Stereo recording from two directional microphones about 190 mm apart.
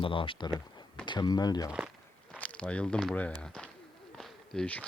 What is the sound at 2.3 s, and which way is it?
Speech, 5° left (ahead or behind).